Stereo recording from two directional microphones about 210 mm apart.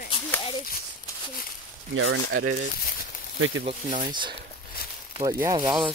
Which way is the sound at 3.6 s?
35° right (ahead or behind).